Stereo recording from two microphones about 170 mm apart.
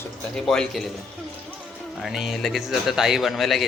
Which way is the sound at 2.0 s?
Centre (ahead or behind).